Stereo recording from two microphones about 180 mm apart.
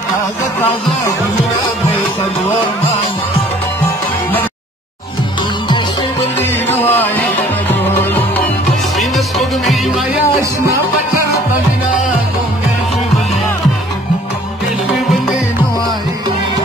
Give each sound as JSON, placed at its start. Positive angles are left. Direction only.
{"t": 6.7, "sound": "music", "side_deg": 10}
{"t": 8.9, "sound": "music", "side_deg": 0}